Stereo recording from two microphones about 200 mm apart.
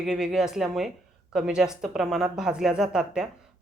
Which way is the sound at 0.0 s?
Centre (ahead or behind).